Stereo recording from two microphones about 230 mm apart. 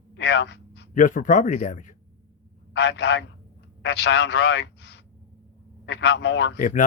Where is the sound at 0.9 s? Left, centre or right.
Left.